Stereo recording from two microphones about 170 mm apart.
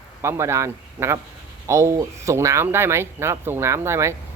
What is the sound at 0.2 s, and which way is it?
Speech, 15° right (ahead or behind).